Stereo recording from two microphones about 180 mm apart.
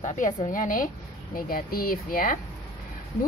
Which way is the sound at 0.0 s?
45° left (ahead or behind).